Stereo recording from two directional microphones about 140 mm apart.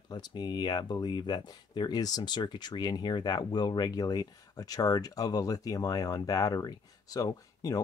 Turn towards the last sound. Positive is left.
turn(degrees=25)  # may be behind; listen again after turning